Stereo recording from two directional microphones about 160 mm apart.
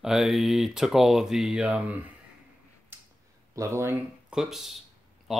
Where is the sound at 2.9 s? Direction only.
15° right (ahead or behind).